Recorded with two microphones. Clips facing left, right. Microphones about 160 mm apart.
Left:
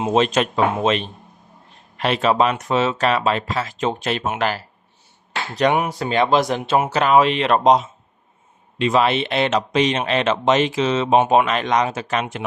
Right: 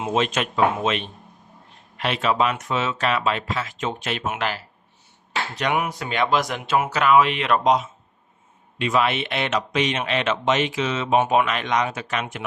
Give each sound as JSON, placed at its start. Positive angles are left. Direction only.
{"t": 0.0, "sound": "speech", "side_deg": 35}